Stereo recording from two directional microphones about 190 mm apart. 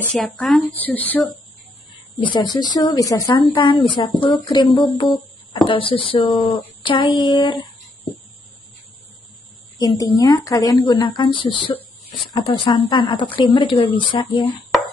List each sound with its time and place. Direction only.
0.1 s a woman's voice: 5° left (ahead or behind)
2.3 s a woman's voice: 20° left (ahead or behind)
9.8 s a woman's voice: 20° left (ahead or behind)